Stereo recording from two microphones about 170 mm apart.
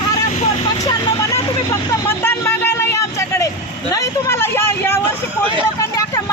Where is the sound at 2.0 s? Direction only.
15° left (ahead or behind).